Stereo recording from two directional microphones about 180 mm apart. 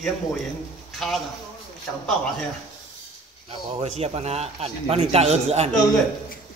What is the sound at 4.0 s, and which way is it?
A man's voice, 35° right (ahead or behind).